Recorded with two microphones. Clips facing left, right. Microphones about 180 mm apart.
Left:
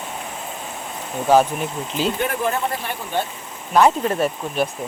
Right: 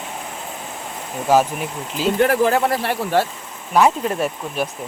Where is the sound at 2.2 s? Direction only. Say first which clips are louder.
Right 6 dB; 80° right.